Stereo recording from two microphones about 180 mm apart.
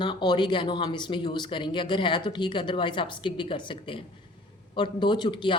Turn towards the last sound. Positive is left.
turn(degrees=25)  # may be behind; listen again after turning